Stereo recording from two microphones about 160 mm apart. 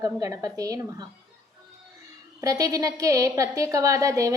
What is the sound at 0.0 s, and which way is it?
Speech, 20° right (ahead or behind).